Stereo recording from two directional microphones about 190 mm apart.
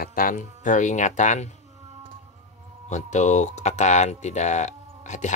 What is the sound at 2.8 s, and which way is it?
Speech, 40° left (ahead or behind).